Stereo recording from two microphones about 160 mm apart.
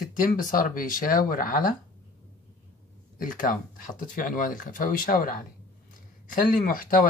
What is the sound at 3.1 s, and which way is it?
A man's voice, 60° left (ahead or behind).